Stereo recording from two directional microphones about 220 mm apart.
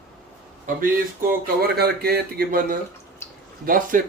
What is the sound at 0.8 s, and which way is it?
Speech, 40° right (ahead or behind).